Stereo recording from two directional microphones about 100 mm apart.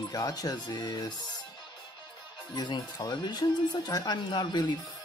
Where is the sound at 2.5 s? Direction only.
45° left (ahead or behind).